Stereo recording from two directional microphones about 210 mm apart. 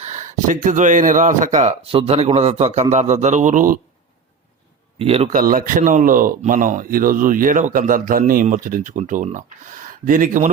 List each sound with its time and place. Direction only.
0.0 s speech: 35° right (ahead or behind)
4.9 s speech: 30° right (ahead or behind)